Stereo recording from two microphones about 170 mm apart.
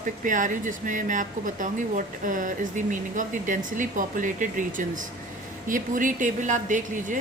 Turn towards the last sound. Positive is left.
turn(degrees=-45)  # may be behind; listen again after turning